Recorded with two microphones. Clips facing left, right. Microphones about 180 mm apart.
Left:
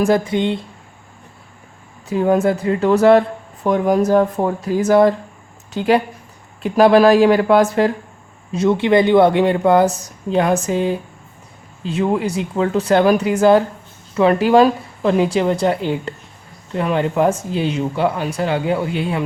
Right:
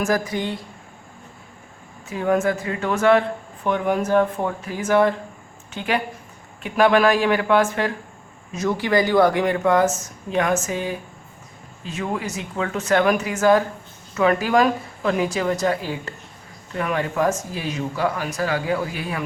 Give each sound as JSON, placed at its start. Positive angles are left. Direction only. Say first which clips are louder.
{"t": 0.0, "sound": "speech", "louder": "left 6 dB", "side_deg": 25}
{"t": 2.0, "sound": "a woman's voice", "louder": "left 5 dB", "side_deg": 30}